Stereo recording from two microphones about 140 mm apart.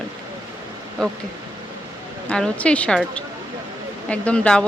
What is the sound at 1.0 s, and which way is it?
Speech, 5° left (ahead or behind).